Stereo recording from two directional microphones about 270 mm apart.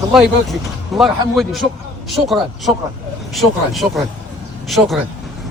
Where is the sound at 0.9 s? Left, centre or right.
Centre.